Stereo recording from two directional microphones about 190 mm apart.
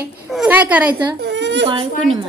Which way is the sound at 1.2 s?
65° right (ahead or behind).